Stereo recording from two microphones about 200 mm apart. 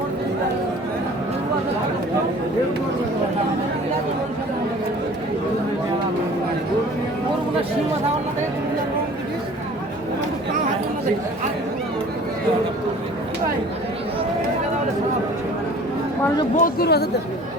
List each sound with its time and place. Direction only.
16.6 s speech: 45° left (ahead or behind)